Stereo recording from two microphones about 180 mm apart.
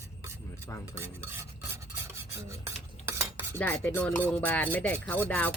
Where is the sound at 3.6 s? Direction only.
10° left (ahead or behind).